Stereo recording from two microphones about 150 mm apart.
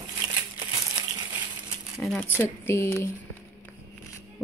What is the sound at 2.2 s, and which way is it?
Speech, 15° left (ahead or behind).